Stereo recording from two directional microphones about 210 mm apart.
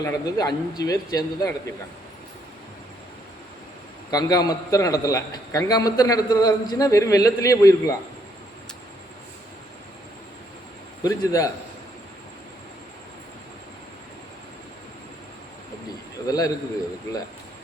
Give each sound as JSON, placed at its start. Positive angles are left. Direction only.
{"t": 0.0, "sound": "a man's voice", "side_deg": 15}
{"t": 4.1, "sound": "a man's voice", "side_deg": 20}
{"t": 11.0, "sound": "a man's voice", "side_deg": 15}
{"t": 16.2, "sound": "a man's voice", "side_deg": 15}